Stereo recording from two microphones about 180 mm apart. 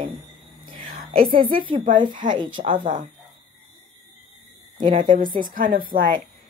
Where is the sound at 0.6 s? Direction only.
50° right (ahead or behind).